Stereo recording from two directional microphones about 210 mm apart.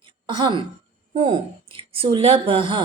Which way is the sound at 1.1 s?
25° right (ahead or behind).